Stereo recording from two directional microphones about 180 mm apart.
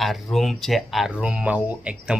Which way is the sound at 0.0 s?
Centre (ahead or behind).